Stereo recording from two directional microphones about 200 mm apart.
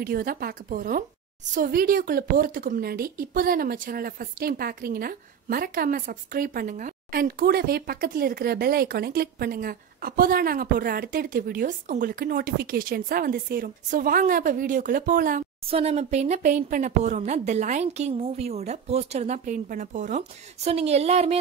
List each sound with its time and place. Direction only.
0.0 s a woman's voice: 50° right (ahead or behind)
15.6 s speech: 30° right (ahead or behind)